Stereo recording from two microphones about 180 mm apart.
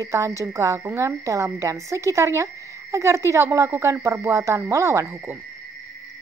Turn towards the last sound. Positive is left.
turn(degrees=-15)  # may be behind; listen again after turning